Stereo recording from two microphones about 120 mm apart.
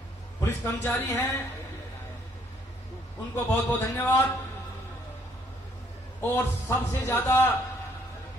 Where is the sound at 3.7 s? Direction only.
15° left (ahead or behind).